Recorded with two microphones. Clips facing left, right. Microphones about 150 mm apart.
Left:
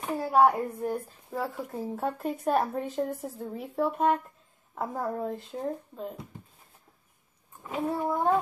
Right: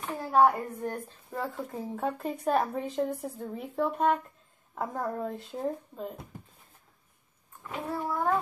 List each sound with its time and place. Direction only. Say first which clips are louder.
0.3 s a woman's voice: left 1 dB; 10° left (ahead or behind)
7.6 s a child's voice: left 4 dB; 20° left (ahead or behind)